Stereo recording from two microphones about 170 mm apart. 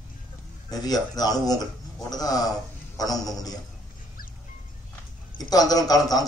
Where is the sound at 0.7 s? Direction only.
20° left (ahead or behind).